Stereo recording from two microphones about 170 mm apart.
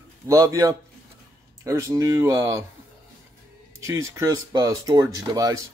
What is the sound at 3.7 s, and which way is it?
Speech, 15° right (ahead or behind).